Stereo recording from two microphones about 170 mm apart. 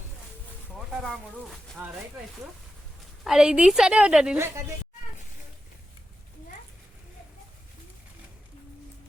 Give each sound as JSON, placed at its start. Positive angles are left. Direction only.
{"t": 0.9, "sound": "speech", "side_deg": 0}
{"t": 1.8, "sound": "speech", "side_deg": -10}
{"t": 3.2, "sound": "a woman's voice", "side_deg": -5}
{"t": 4.4, "sound": "speech", "side_deg": -15}